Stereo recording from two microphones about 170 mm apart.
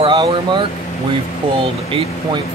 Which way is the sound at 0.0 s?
25° right (ahead or behind).